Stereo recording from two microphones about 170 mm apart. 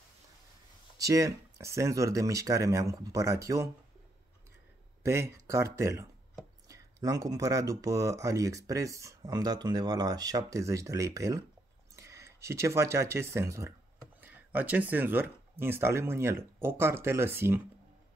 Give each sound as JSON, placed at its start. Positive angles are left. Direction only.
{"t": 0.9, "sound": "speech", "side_deg": -20}
{"t": 5.0, "sound": "speech", "side_deg": -15}